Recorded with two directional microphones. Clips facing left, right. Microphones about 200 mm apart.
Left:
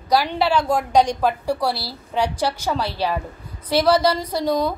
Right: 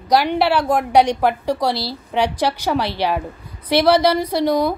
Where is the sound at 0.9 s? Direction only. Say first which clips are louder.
Right 3 dB; 65° right (ahead or behind).